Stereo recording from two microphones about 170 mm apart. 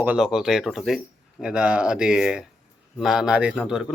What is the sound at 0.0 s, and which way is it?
A man's voice, 5° right (ahead or behind).